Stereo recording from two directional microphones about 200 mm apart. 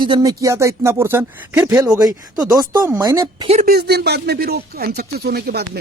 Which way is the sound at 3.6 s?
50° right (ahead or behind).